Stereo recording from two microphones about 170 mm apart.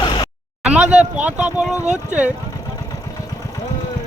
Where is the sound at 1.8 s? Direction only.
45° right (ahead or behind).